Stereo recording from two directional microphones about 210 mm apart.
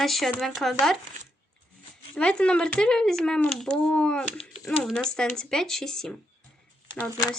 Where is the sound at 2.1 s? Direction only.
5° left (ahead or behind).